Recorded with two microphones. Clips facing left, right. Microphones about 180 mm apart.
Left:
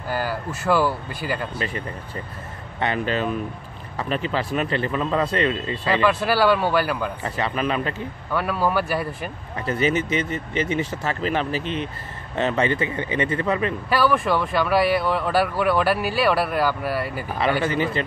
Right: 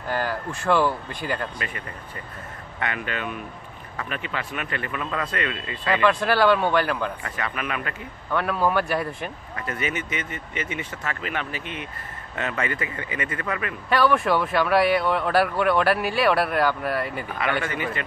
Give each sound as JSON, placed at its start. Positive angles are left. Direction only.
{"t": 0.1, "sound": "speech", "side_deg": 5}
{"t": 2.8, "sound": "speech", "side_deg": 30}
{"t": 6.0, "sound": "speech", "side_deg": 5}
{"t": 7.2, "sound": "speech", "side_deg": 30}
{"t": 8.3, "sound": "speech", "side_deg": 5}
{"t": 9.6, "sound": "speech", "side_deg": 30}
{"t": 13.8, "sound": "speech", "side_deg": 5}